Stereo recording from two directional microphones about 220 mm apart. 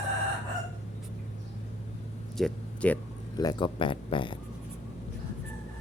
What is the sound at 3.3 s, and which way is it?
Speech, 20° left (ahead or behind).